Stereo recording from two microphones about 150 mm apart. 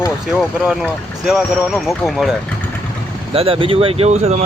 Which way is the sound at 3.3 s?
40° right (ahead or behind).